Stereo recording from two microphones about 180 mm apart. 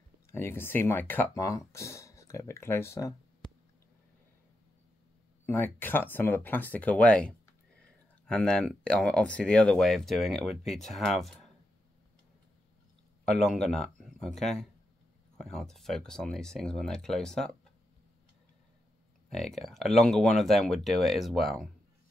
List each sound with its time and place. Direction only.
0.3 s speech: 15° left (ahead or behind)
5.5 s speech: 10° left (ahead or behind)
13.3 s speech: centre (ahead or behind)
19.2 s speech: centre (ahead or behind)